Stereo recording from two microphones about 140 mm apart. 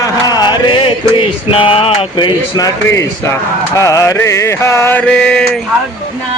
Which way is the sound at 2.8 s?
20° left (ahead or behind).